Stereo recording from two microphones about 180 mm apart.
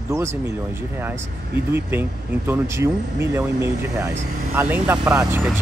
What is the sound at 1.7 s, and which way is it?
Speech, 10° right (ahead or behind).